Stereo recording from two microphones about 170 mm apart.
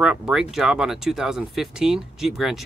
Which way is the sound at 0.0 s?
5° right (ahead or behind).